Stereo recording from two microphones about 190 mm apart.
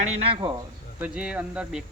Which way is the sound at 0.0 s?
35° right (ahead or behind).